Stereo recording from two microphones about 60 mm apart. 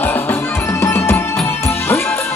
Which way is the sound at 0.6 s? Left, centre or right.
Left.